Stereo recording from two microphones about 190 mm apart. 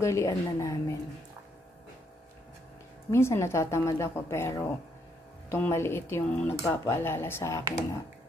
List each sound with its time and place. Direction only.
0.0 s speech: 15° left (ahead or behind)
3.1 s speech: 15° left (ahead or behind)